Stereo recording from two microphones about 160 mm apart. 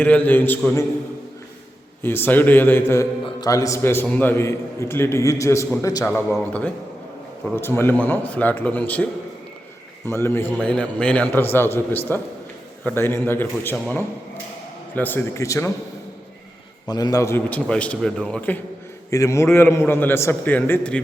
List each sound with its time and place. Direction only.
0.0 s a man's voice: 10° left (ahead or behind)
2.0 s a man's voice: 15° left (ahead or behind)
6.3 s a man's voice: 10° left (ahead or behind)
10.1 s a man's voice: 15° left (ahead or behind)
16.8 s a man's voice: 25° left (ahead or behind)